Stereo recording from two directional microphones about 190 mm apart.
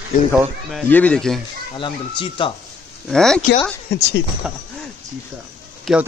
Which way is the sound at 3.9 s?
60° left (ahead or behind).